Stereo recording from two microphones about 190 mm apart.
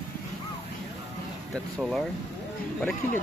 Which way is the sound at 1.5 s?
Centre (ahead or behind).